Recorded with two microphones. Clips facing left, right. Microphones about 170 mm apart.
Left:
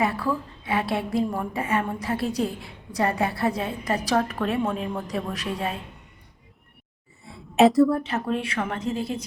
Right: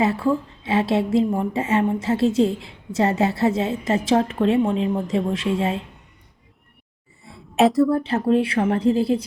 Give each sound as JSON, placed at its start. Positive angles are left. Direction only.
{"t": 0.0, "sound": "a woman's voice", "side_deg": -25}
{"t": 7.3, "sound": "a sound", "side_deg": 0}
{"t": 8.0, "sound": "speech", "side_deg": -30}